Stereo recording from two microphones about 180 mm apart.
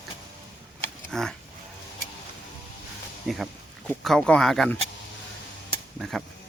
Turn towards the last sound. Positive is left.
turn(degrees=0)  # may be behind; listen again after turning